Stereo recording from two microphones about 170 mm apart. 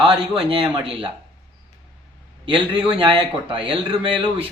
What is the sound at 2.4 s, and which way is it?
A man's voice, 30° right (ahead or behind).